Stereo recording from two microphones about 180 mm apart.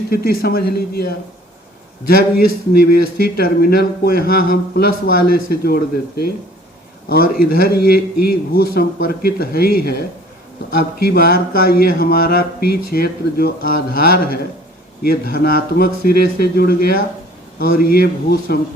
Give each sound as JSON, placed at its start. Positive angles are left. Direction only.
{"t": 0.1, "sound": "speech", "side_deg": 55}
{"t": 2.4, "sound": "speech", "side_deg": 55}